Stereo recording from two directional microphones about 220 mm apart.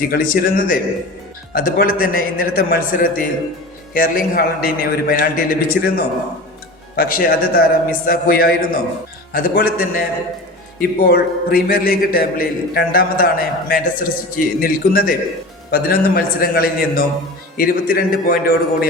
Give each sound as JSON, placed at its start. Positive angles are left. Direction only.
{"t": 0.1, "sound": "a man's voice", "side_deg": 40}